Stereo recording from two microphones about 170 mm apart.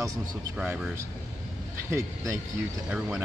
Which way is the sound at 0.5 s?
5° right (ahead or behind).